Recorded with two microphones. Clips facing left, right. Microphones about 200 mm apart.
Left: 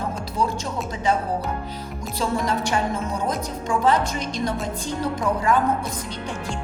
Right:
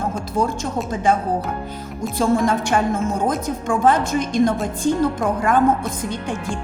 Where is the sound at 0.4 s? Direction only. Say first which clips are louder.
Right 3 dB; 50° right (ahead or behind).